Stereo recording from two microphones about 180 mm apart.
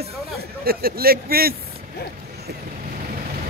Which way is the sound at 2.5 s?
65° right (ahead or behind).